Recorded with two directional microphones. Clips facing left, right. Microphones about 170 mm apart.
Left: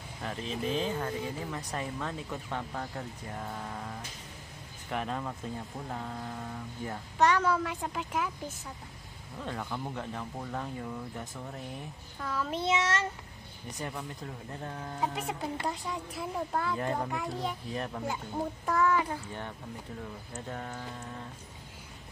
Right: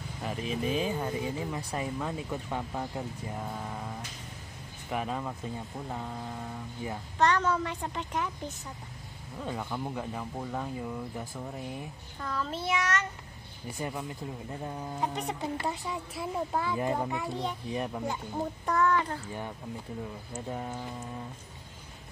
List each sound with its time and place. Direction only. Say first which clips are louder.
0.2 s a child's voice: right 2 dB; 10° right (ahead or behind)
7.2 s a child's voice: even; 10° left (ahead or behind)
9.4 s a child's voice: right 2 dB; 5° right (ahead or behind)
12.2 s a child's voice: left 1 dB; 5° left (ahead or behind); by 13.0 s 25° left (ahead or behind)
13.7 s speech: right 3 dB; 10° right (ahead or behind)
15.0 s a child's voice: even; centre (ahead or behind)
20.3 s speech: right 3 dB; 10° right (ahead or behind)